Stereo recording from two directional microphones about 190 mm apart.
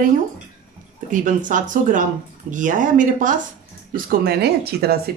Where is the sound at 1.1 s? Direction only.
45° right (ahead or behind).